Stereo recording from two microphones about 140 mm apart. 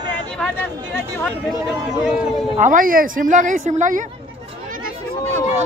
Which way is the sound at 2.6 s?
75° right (ahead or behind).